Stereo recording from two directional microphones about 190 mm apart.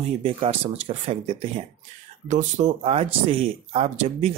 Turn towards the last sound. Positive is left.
turn(degrees=-30)  # may be behind; listen again after turning